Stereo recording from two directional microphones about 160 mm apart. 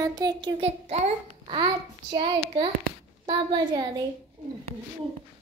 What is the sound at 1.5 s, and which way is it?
A child's voice, 30° right (ahead or behind).